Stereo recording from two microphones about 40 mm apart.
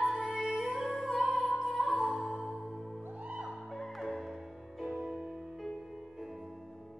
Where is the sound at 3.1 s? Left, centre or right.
Right.